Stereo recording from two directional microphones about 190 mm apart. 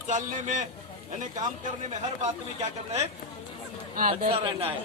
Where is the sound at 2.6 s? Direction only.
35° right (ahead or behind).